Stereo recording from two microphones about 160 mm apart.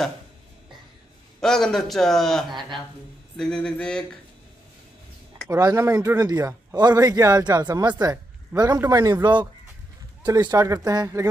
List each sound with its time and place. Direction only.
1.4 s a man's voice: 5° left (ahead or behind)
5.5 s speech: 20° right (ahead or behind)